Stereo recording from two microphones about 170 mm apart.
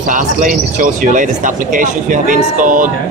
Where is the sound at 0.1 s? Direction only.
50° right (ahead or behind).